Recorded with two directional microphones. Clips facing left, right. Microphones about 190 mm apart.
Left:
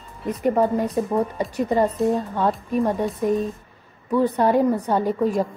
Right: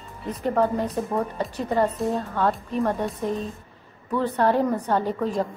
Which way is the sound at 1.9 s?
Centre (ahead or behind).